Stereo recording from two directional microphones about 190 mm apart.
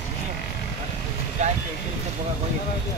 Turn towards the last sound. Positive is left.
turn(degrees=-35)  # may be behind; listen again after turning